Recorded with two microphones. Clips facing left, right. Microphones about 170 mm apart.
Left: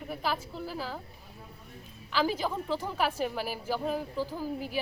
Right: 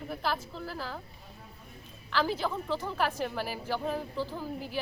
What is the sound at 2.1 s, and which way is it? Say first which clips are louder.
A woman's voice: left 1 dB; 10° left (ahead or behind).